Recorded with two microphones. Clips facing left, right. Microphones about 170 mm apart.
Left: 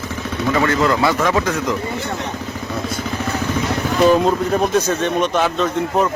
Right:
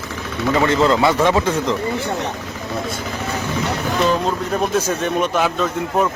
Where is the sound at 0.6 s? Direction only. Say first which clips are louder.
Right 2 dB; 25° right (ahead or behind).